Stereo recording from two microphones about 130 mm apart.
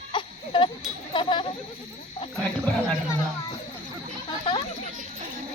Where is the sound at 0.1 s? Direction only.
40° left (ahead or behind).